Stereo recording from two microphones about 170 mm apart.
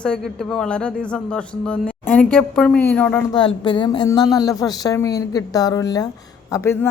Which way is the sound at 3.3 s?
25° left (ahead or behind).